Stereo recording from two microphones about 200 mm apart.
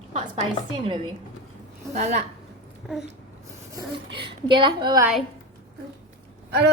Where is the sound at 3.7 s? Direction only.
25° right (ahead or behind).